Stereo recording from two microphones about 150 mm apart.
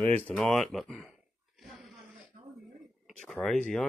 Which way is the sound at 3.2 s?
Centre (ahead or behind).